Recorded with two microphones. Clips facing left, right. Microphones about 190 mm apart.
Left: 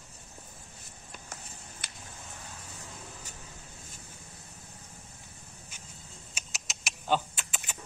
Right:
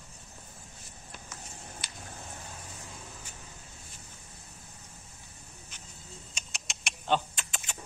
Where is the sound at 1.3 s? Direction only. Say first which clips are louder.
Right 3 dB; 55° left (ahead or behind).